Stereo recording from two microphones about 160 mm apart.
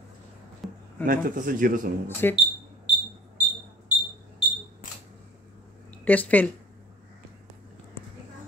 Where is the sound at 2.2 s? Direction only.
15° left (ahead or behind).